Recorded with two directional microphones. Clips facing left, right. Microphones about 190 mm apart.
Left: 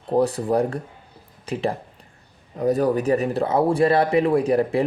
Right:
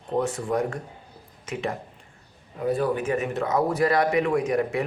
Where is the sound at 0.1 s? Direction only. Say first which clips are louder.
Left 5 dB; 35° left (ahead or behind).